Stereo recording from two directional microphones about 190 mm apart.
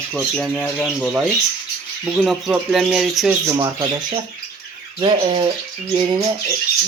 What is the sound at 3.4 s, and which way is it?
Speech, 20° right (ahead or behind).